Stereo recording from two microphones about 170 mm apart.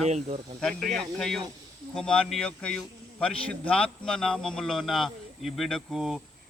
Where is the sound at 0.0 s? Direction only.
40° right (ahead or behind).